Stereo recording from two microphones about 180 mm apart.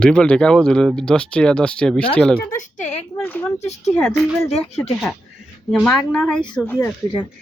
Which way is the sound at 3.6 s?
40° left (ahead or behind).